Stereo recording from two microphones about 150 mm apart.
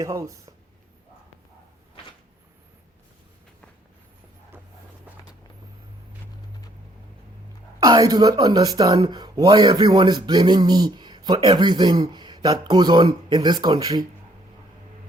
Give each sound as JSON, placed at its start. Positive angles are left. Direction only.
{"t": 0.0, "sound": "speech", "side_deg": -20}
{"t": 4.5, "sound": "a sound", "side_deg": -15}
{"t": 7.8, "sound": "speech", "side_deg": -25}